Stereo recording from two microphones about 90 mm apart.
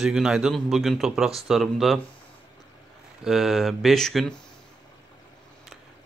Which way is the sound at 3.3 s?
5° right (ahead or behind).